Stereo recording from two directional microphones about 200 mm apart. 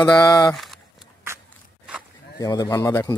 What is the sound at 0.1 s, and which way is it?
Speech, 20° left (ahead or behind).